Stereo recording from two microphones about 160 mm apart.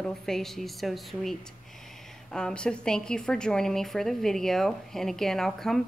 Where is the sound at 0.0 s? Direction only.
Centre (ahead or behind).